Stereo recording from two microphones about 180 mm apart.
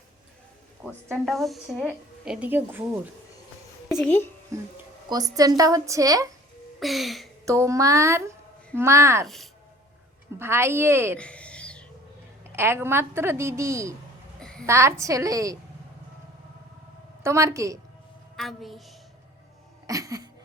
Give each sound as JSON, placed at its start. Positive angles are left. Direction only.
{"t": 1.1, "sound": "a woman's voice", "side_deg": 0}
{"t": 3.8, "sound": "a sound", "side_deg": 0}
{"t": 4.5, "sound": "a woman's voice", "side_deg": -15}
{"t": 6.7, "sound": "a woman's voice", "side_deg": 0}
{"t": 7.4, "sound": "a woman's voice", "side_deg": -15}
{"t": 9.2, "sound": "a woman's voice", "side_deg": 0}
{"t": 10.3, "sound": "a woman's voice", "side_deg": -15}
{"t": 11.2, "sound": "a sound", "side_deg": 5}
{"t": 12.5, "sound": "a woman's voice", "side_deg": -15}
{"t": 14.3, "sound": "a sound", "side_deg": 5}
{"t": 14.7, "sound": "a woman's voice", "side_deg": -15}
{"t": 17.2, "sound": "a woman's voice", "side_deg": -15}
{"t": 18.3, "sound": "a woman's voice", "side_deg": 0}
{"t": 19.9, "sound": "a sound", "side_deg": -20}